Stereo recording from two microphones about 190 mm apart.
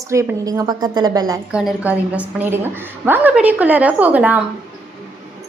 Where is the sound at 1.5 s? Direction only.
5° right (ahead or behind).